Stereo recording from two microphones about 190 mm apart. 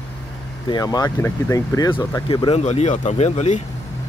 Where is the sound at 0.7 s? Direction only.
20° left (ahead or behind).